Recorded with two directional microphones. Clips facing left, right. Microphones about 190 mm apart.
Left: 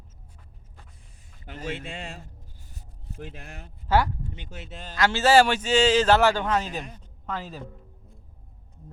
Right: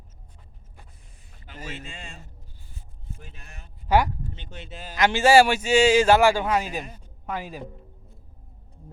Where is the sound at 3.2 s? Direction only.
75° left (ahead or behind).